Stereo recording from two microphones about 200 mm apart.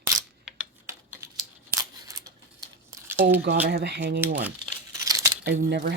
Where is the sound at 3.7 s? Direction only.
55° right (ahead or behind).